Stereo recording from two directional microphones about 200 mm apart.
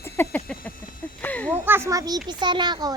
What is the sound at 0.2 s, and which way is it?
Speech, 10° left (ahead or behind).